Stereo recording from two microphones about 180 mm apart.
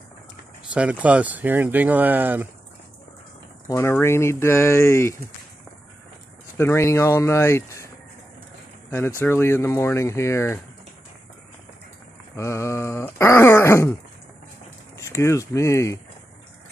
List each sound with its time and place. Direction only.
0.7 s speech: 5° right (ahead or behind)
3.6 s speech: 15° left (ahead or behind)
6.5 s speech: 15° left (ahead or behind)
8.9 s speech: 15° left (ahead or behind)
12.4 s speech: 15° left (ahead or behind)
15.0 s speech: 15° left (ahead or behind)